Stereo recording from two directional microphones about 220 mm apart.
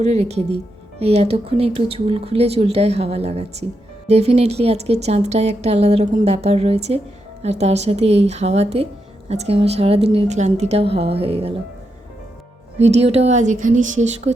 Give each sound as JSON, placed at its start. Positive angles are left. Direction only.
{"t": 0.0, "sound": "speech", "side_deg": -30}
{"t": 13.0, "sound": "speech", "side_deg": -30}